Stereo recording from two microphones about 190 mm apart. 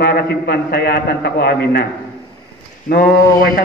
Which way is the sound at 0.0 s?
55° left (ahead or behind).